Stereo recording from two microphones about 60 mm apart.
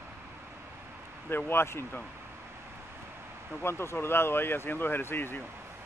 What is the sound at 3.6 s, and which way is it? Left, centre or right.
Speech, left.